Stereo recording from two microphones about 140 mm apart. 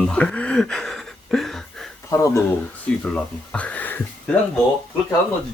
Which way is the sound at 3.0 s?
10° left (ahead or behind).